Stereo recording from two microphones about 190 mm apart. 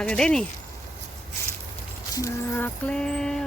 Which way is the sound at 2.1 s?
15° left (ahead or behind).